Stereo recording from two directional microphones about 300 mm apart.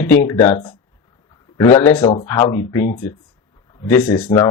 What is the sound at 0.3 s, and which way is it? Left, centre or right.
Speech, centre.